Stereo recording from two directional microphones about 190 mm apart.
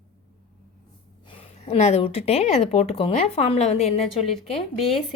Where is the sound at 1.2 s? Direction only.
35° left (ahead or behind).